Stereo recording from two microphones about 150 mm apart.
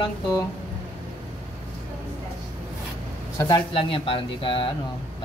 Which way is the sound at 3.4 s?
30° left (ahead or behind).